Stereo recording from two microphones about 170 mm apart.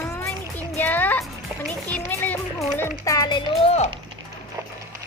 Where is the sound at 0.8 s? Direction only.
10° left (ahead or behind).